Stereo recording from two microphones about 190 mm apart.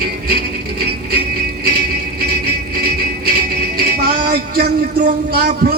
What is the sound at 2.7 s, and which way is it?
Music, 55° right (ahead or behind).